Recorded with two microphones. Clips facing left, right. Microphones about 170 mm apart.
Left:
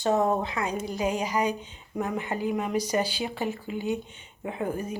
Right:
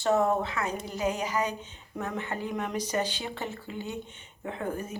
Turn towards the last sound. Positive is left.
turn(degrees=10)  # may be behind; listen again after turning